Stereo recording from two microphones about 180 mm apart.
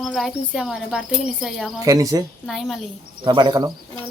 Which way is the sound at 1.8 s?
20° right (ahead or behind).